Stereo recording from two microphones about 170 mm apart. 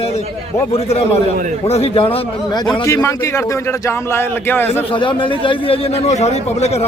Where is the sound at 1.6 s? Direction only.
35° left (ahead or behind); by 4.8 s 10° left (ahead or behind).